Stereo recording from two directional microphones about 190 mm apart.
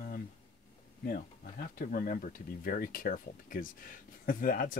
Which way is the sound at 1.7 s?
45° left (ahead or behind).